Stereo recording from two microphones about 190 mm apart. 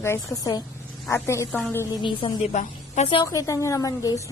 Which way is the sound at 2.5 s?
40° left (ahead or behind).